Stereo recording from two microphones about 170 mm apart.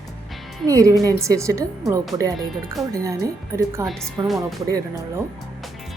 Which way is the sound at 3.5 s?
15° right (ahead or behind).